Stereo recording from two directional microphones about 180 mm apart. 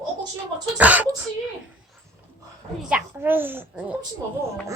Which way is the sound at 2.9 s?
10° right (ahead or behind).